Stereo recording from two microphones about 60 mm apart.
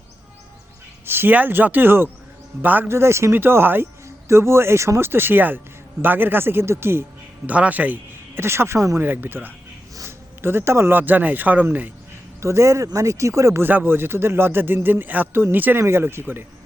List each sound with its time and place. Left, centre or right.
1.0 s a man's voice: right
2.9 s speech: right
3.3 s a man's voice: right
4.3 s a man's voice: right
7.4 s speech: right
8.4 s speech: right
9.0 s a man's voice: right
10.1 s a sound: right
10.9 s a man's voice: right
12.4 s speech: right
13.6 s a man's voice: right
15.8 s a man's voice: right